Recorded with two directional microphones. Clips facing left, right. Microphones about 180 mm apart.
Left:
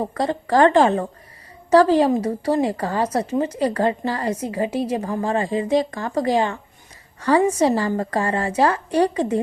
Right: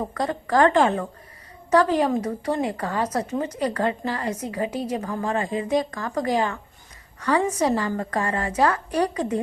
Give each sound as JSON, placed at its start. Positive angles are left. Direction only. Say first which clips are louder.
{"t": 0.0, "sound": "a woman's voice", "louder": "left 4 dB", "side_deg": 30}